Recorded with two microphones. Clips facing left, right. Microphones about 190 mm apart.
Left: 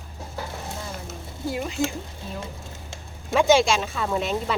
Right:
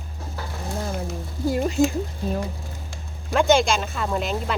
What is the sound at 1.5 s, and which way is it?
Speech, 45° right (ahead or behind).